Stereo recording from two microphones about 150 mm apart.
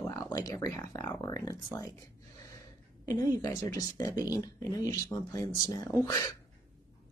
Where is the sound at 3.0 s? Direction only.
25° left (ahead or behind).